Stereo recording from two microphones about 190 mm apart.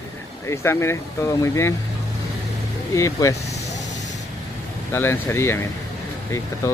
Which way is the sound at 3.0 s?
15° left (ahead or behind).